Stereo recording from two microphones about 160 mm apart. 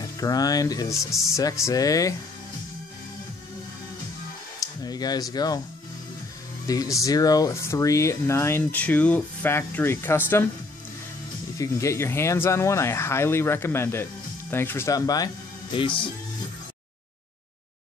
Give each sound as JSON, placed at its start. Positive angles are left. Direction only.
{"t": 0.0, "sound": "speech", "side_deg": 20}
{"t": 4.6, "sound": "a sound", "side_deg": 25}
{"t": 6.7, "sound": "speech", "side_deg": 20}
{"t": 11.5, "sound": "speech", "side_deg": 20}